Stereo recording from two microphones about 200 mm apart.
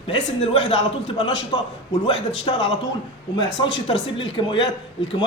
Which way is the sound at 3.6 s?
65° left (ahead or behind).